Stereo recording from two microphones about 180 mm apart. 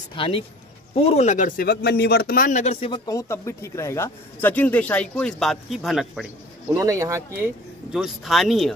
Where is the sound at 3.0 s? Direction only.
15° left (ahead or behind); by 6.2 s centre (ahead or behind).